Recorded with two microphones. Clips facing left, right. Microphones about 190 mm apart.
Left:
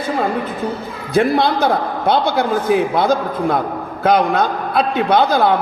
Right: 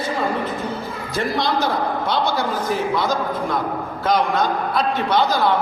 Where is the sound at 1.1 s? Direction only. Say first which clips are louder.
Left 7 dB; 55° left (ahead or behind).